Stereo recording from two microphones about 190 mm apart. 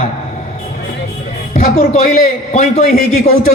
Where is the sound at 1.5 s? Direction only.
40° left (ahead or behind).